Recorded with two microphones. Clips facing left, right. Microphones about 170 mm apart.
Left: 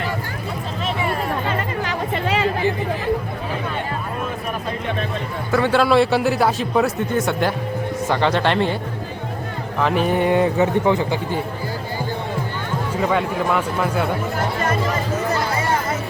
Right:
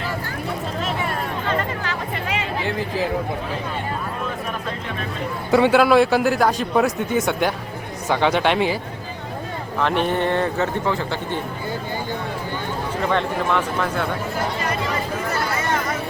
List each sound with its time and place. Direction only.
2.2 s a sound: 30° left (ahead or behind)
5.5 s a man's voice: 15° right (ahead or behind)
5.8 s a man's voice: centre (ahead or behind)
9.8 s a man's voice: 5° left (ahead or behind)
13.0 s a man's voice: 5° left (ahead or behind)
14.6 s speech: 45° left (ahead or behind)